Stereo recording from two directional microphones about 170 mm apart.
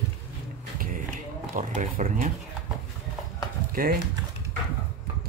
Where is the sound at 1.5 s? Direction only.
45° right (ahead or behind).